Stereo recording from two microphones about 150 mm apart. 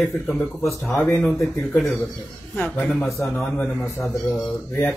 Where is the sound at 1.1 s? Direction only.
15° left (ahead or behind).